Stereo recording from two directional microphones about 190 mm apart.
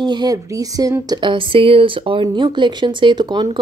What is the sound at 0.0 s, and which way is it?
Speech, 20° right (ahead or behind).